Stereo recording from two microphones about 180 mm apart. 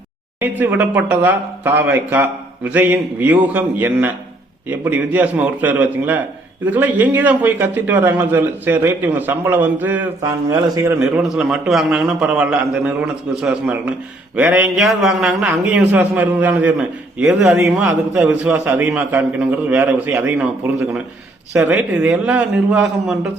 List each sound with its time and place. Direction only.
0.3 s a man's voice: 10° right (ahead or behind)
11.0 s a man's voice: centre (ahead or behind)
21.6 s a man's voice: 5° right (ahead or behind)